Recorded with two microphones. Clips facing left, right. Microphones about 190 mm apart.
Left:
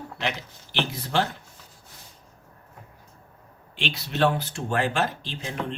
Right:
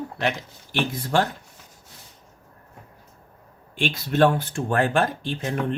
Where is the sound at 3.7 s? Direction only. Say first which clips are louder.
Right 6 dB; 50° right (ahead or behind).